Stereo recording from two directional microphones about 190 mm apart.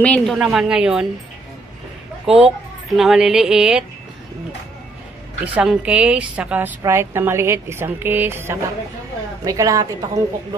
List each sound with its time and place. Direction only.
0.0 s a woman's voice: 5° left (ahead or behind)
2.4 s speech: centre (ahead or behind)
5.4 s a woman's voice: 5° right (ahead or behind)